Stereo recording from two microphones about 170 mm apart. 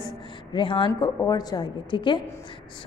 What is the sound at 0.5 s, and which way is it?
A woman's voice, 30° left (ahead or behind).